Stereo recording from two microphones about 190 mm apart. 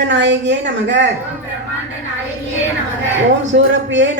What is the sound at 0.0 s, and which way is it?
A man's voice, 70° right (ahead or behind).